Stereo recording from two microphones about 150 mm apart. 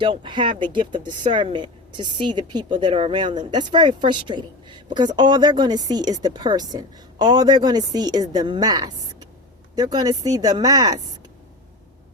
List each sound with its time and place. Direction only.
0.0 s speech: 35° right (ahead or behind)